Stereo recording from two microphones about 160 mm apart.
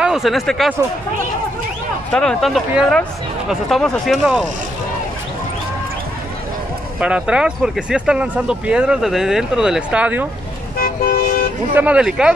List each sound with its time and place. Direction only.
0.0 s speech: centre (ahead or behind)
2.1 s speech: centre (ahead or behind)
7.0 s speech: 5° right (ahead or behind)
10.8 s toot: 70° left (ahead or behind)
11.7 s speech: 10° right (ahead or behind)